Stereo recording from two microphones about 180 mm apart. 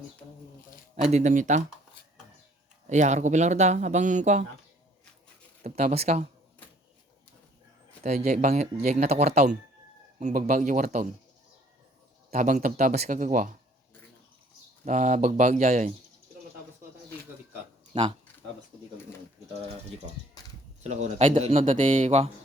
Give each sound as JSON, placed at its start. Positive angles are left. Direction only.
{"t": 1.1, "sound": "speech", "side_deg": -45}
{"t": 2.9, "sound": "speech", "side_deg": -40}
{"t": 5.6, "sound": "speech", "side_deg": -35}
{"t": 8.0, "sound": "speech", "side_deg": -40}
{"t": 12.3, "sound": "speech", "side_deg": -45}
{"t": 14.8, "sound": "speech", "side_deg": -40}
{"t": 17.9, "sound": "speech", "side_deg": -30}
{"t": 20.8, "sound": "speech", "side_deg": -35}